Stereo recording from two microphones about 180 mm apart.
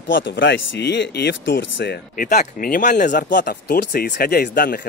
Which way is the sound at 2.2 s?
50° left (ahead or behind).